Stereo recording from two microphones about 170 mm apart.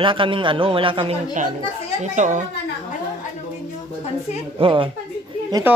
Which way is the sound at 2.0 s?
45° right (ahead or behind).